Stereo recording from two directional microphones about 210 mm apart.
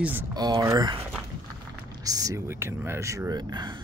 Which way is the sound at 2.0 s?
15° right (ahead or behind).